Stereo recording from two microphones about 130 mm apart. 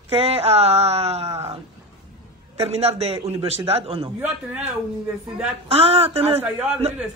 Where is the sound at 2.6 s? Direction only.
55° right (ahead or behind).